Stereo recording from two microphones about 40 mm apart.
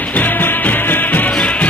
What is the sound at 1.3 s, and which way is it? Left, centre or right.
Music, left.